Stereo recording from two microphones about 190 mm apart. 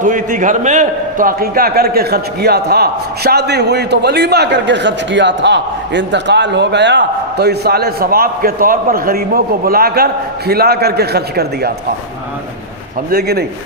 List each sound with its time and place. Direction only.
0.0 s a man's voice: 45° right (ahead or behind)
13.1 s a man's voice: 55° right (ahead or behind)